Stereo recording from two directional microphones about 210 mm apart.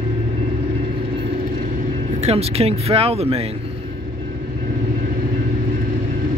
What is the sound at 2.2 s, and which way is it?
Speech, 30° right (ahead or behind).